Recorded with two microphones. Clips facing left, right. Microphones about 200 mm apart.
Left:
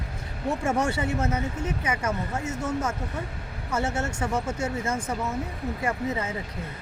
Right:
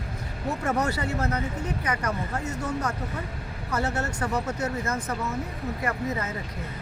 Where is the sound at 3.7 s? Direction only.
25° left (ahead or behind).